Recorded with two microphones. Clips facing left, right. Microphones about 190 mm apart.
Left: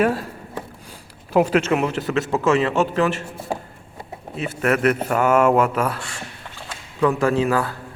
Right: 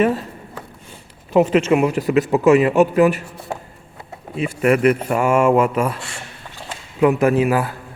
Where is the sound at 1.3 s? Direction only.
Centre (ahead or behind).